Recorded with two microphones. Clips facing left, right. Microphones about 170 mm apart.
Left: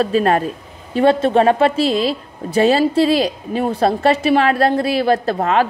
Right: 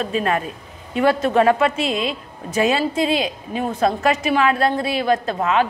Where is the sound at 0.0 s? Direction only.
35° left (ahead or behind).